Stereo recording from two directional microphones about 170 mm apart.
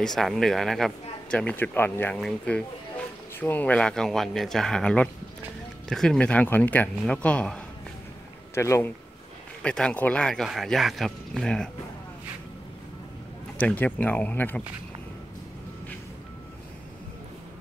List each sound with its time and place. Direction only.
0.0 s speech: centre (ahead or behind)
13.6 s speech: 10° left (ahead or behind)